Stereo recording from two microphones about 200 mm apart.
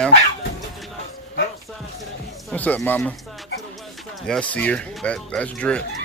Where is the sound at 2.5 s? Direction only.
10° left (ahead or behind).